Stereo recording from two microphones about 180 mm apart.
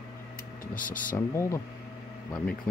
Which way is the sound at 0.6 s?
50° left (ahead or behind).